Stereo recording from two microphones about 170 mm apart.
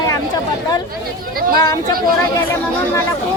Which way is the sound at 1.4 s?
60° right (ahead or behind).